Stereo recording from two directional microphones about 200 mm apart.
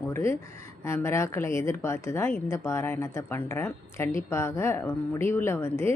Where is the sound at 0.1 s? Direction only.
15° left (ahead or behind).